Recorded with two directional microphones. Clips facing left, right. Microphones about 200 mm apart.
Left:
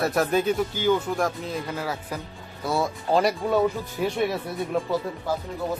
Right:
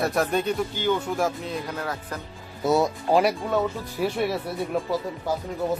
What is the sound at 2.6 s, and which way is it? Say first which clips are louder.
A man's voice: right 4 dB; 20° right (ahead or behind).